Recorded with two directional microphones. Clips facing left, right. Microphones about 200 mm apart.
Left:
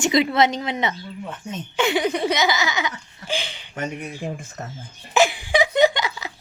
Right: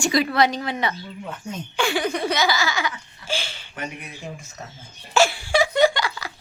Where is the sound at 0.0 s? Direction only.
20° left (ahead or behind).